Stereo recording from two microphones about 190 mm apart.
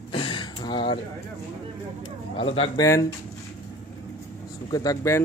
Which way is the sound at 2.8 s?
15° left (ahead or behind).